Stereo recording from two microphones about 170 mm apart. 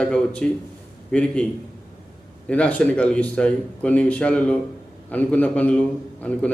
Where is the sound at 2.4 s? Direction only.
5° left (ahead or behind).